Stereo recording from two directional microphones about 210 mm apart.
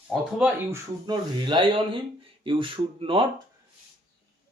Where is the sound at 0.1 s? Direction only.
5° right (ahead or behind).